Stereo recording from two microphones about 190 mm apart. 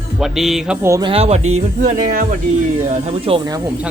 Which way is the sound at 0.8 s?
15° right (ahead or behind).